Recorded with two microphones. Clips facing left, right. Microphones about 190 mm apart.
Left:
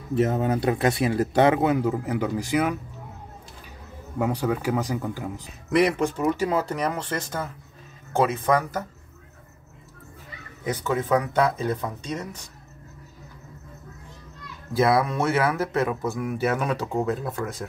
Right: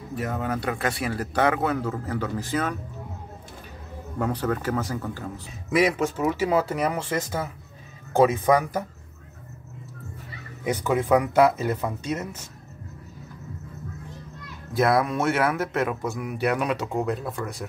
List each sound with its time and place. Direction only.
0.1 s speech: 25° left (ahead or behind)
4.2 s speech: 10° left (ahead or behind)
5.8 s speech: centre (ahead or behind)
10.6 s speech: 10° right (ahead or behind)
14.7 s speech: centre (ahead or behind)